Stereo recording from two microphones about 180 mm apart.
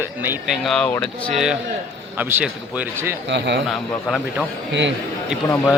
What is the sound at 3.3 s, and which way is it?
Speech, 75° right (ahead or behind).